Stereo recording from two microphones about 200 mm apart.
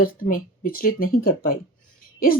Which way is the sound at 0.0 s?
45° left (ahead or behind).